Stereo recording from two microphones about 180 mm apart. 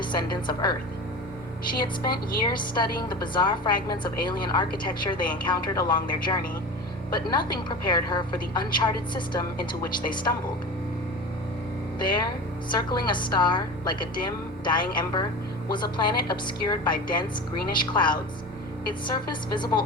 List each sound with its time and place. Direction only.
0.1 s a woman's voice: 25° left (ahead or behind)
1.8 s a woman's voice: 25° left (ahead or behind)
11.9 s a woman's voice: 25° left (ahead or behind)